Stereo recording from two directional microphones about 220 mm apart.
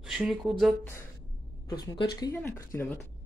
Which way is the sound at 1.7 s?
20° left (ahead or behind).